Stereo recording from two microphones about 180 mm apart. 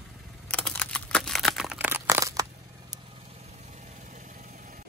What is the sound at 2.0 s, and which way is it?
Crushing, 15° right (ahead or behind).